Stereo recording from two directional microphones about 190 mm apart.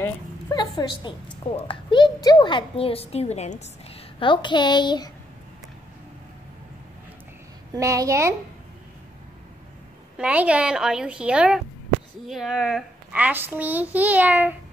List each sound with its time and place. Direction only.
0.0 s a sound: 20° left (ahead or behind)
1.6 s a woman's voice: 25° left (ahead or behind)
7.7 s a child's voice: 15° right (ahead or behind)
10.1 s a woman's voice: 5° right (ahead or behind)